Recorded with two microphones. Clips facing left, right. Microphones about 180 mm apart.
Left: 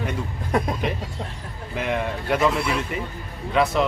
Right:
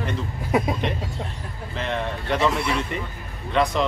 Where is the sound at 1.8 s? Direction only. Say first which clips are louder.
Left 2 dB; 10° left (ahead or behind).